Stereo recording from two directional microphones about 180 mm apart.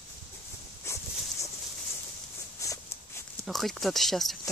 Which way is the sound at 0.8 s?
15° left (ahead or behind).